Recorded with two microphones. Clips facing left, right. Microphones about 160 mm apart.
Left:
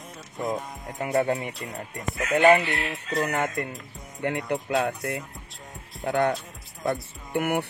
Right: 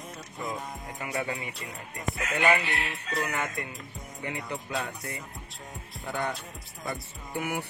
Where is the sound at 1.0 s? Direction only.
45° left (ahead or behind).